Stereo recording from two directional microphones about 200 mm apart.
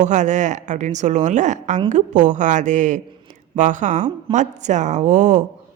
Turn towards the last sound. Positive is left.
turn(degrees=-35)  # may be behind; listen again after turning